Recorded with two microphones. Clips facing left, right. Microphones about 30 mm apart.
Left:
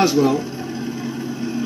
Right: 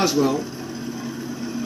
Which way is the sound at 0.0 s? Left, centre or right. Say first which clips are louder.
Left 4 dB; centre.